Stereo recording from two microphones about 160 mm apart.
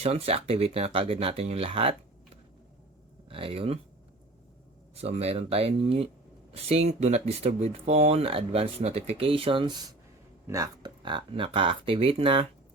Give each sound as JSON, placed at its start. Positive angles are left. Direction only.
{"t": 0.0, "sound": "speech", "side_deg": -40}
{"t": 4.9, "sound": "speech", "side_deg": -40}